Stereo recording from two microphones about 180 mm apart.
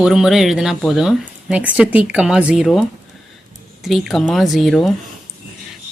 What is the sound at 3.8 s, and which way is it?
Speech, centre (ahead or behind).